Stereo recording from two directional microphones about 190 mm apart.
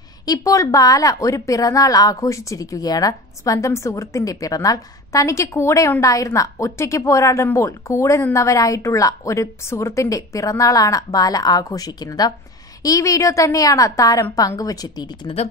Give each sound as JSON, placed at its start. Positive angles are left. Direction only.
{"t": 0.2, "sound": "a woman's voice", "side_deg": 20}